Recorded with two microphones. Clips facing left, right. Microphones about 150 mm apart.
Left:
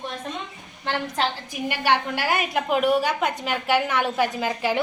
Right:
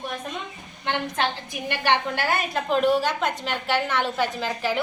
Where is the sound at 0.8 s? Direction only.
Centre (ahead or behind).